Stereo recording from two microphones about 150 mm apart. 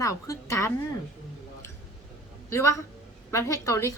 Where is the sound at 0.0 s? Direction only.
20° left (ahead or behind).